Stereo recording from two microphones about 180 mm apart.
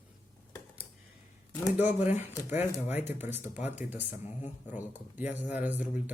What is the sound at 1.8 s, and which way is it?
Speech, 10° right (ahead or behind).